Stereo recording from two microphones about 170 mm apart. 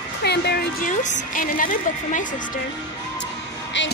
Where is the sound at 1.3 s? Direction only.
50° left (ahead or behind).